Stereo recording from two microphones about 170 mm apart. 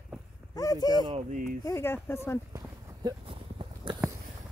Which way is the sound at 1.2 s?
50° right (ahead or behind).